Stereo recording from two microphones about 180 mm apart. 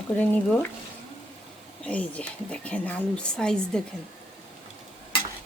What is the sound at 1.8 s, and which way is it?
A woman's voice, 5° left (ahead or behind).